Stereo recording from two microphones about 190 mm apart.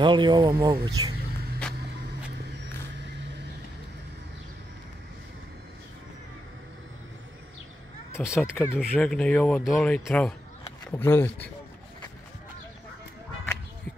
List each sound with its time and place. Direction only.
0.0 s speech: 25° right (ahead or behind)
8.3 s speech: 10° left (ahead or behind)